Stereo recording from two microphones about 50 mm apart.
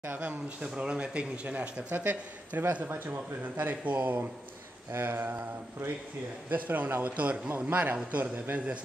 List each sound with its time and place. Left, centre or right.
0.2 s a man's voice: right
4.9 s speech: right
6.5 s a man's voice: right